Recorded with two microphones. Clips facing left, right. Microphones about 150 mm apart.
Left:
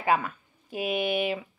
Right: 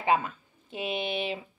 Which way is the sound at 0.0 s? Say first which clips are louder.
Even; 25° right (ahead or behind).